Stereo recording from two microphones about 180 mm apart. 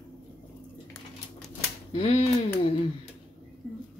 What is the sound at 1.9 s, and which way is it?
Speech, 30° left (ahead or behind).